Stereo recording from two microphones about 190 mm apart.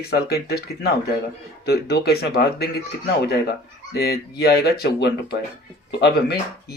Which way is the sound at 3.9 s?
55° left (ahead or behind).